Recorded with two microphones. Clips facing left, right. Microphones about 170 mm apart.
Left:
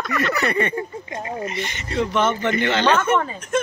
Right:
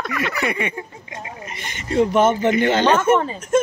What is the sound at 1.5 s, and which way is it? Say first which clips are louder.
Speech: right 3 dB; 50° right (ahead or behind).